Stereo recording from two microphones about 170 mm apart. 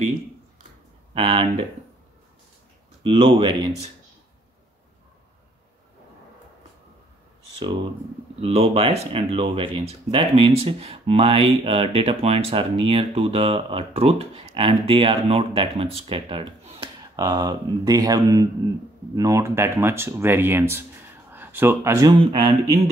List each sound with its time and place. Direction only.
1.1 s speech: 30° right (ahead or behind)
3.0 s speech: 30° right (ahead or behind)
8.4 s speech: 35° right (ahead or behind)